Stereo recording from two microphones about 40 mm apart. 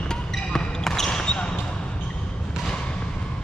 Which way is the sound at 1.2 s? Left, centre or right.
Left.